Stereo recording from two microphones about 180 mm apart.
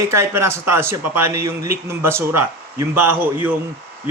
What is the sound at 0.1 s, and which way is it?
A man's voice, 15° right (ahead or behind).